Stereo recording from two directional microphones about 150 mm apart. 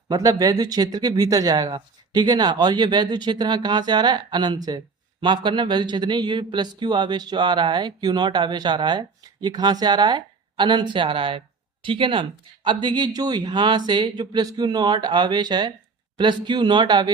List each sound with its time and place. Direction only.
0.1 s a man's voice: 25° right (ahead or behind)